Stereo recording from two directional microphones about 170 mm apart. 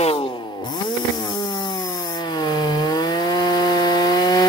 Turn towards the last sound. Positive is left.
turn(degrees=25)  # may be behind; listen again after turning